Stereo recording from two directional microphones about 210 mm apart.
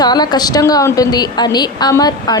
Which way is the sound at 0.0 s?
20° left (ahead or behind).